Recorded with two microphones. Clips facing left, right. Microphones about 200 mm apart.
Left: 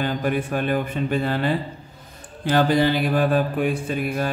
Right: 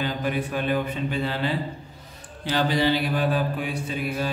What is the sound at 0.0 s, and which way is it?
Mantra, 50° left (ahead or behind).